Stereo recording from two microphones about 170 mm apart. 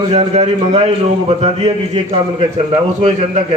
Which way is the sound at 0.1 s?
40° right (ahead or behind).